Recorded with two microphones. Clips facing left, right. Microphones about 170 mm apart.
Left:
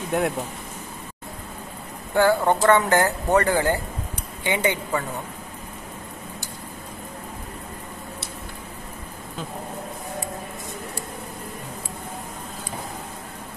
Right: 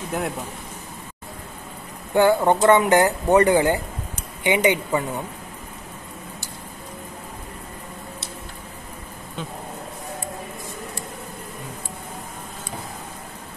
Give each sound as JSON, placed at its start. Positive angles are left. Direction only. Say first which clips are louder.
{"t": 0.1, "sound": "speech", "louder": "left 4 dB", "side_deg": 0}
{"t": 2.1, "sound": "speech", "louder": "right 2 dB", "side_deg": -20}